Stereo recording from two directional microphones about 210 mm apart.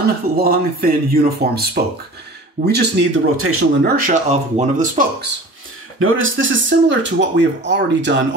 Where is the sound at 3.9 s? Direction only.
35° right (ahead or behind).